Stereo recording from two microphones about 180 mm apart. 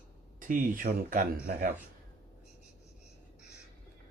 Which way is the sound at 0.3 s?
50° right (ahead or behind).